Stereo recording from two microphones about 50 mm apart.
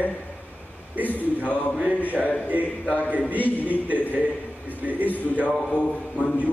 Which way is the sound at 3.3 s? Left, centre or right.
Left.